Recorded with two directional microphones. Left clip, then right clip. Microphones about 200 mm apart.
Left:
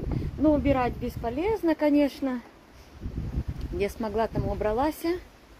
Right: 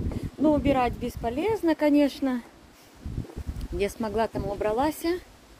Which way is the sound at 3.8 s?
10° right (ahead or behind).